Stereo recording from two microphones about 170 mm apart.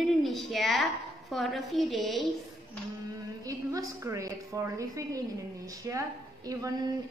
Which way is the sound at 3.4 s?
20° right (ahead or behind).